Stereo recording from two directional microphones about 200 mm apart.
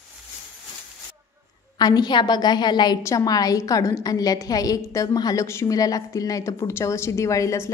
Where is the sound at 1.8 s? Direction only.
20° left (ahead or behind).